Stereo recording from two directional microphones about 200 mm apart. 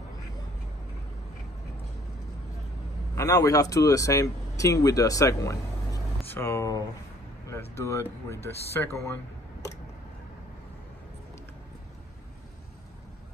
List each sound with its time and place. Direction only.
3.2 s speech: 15° left (ahead or behind)